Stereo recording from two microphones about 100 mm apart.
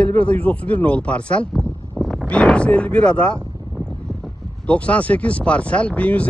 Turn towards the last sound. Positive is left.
turn(degrees=15)  # may be behind; listen again after turning